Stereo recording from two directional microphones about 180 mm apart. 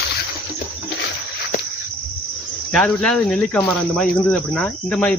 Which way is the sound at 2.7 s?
5° left (ahead or behind).